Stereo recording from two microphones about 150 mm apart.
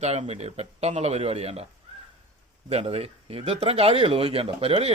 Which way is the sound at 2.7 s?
45° right (ahead or behind).